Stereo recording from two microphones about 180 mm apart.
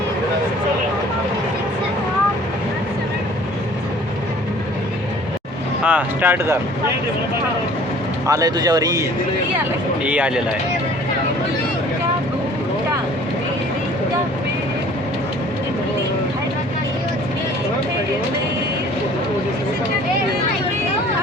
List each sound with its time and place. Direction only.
5.8 s speech: 10° right (ahead or behind)
8.3 s a man's voice: 20° right (ahead or behind)
10.1 s speech: 5° right (ahead or behind)